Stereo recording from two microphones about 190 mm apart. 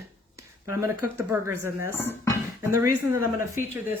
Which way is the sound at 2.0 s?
10° left (ahead or behind).